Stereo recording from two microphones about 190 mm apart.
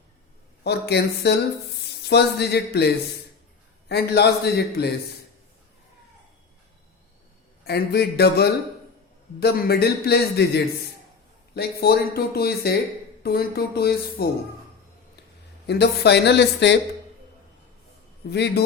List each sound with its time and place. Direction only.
0.6 s speech: 60° left (ahead or behind)
7.6 s speech: 55° left (ahead or behind)
15.6 s speech: 60° left (ahead or behind)
18.3 s speech: 60° left (ahead or behind)